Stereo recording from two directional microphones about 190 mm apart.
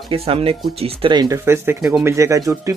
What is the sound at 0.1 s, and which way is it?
Speech, 30° right (ahead or behind).